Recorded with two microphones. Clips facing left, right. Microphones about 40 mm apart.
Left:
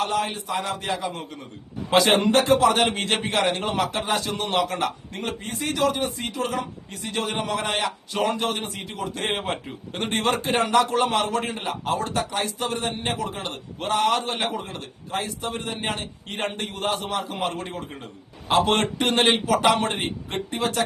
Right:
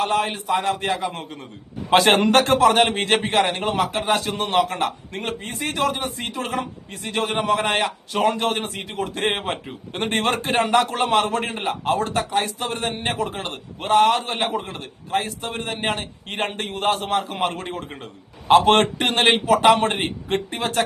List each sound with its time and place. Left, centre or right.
0.0 s a man's voice: right
2.0 s a man's voice: right
2.8 s a man's voice: right
4.3 s a man's voice: right
14.1 s a man's voice: right